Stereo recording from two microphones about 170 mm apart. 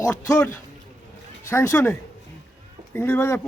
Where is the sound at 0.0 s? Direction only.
20° left (ahead or behind).